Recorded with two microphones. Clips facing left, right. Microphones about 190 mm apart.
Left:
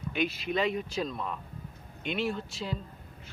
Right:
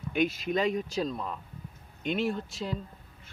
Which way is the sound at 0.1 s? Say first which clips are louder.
Right 3 dB; 45° right (ahead or behind).